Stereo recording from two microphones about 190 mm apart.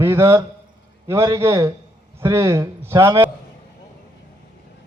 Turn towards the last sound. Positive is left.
turn(degrees=-15)  # may be behind; listen again after turning